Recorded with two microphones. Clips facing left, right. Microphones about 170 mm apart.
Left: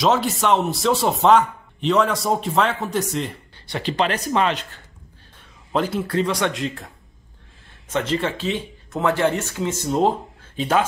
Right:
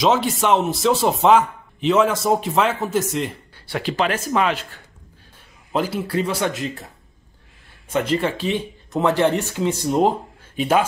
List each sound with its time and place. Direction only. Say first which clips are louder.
0.0 s speech: right 1 dB; centre (ahead or behind)
6.4 s speech: even; centre (ahead or behind)
7.9 s speech: right 2 dB; 10° right (ahead or behind)